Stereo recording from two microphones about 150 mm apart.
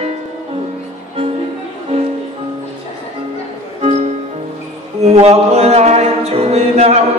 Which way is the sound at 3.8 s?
45° right (ahead or behind).